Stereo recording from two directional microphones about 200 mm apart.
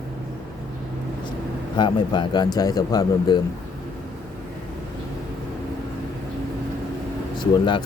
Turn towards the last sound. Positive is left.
turn(degrees=25)  # may be behind; listen again after turning